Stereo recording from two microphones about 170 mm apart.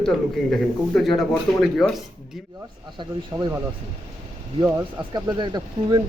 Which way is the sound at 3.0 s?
25° right (ahead or behind).